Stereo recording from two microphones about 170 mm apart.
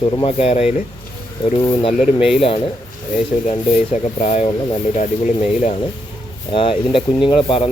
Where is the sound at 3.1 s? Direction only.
45° left (ahead or behind).